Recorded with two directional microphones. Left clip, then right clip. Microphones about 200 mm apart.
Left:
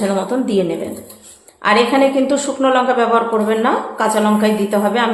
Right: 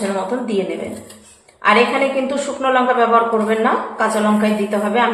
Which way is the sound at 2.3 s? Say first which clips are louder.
Left 2 dB; 50° left (ahead or behind).